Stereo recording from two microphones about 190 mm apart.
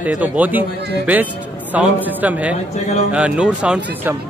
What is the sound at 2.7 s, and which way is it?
Mantra, 35° left (ahead or behind).